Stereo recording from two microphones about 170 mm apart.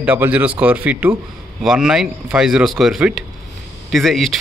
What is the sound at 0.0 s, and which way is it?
Speech, 10° right (ahead or behind).